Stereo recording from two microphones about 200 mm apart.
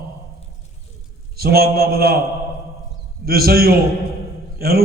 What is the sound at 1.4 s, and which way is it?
Speech, 50° right (ahead or behind).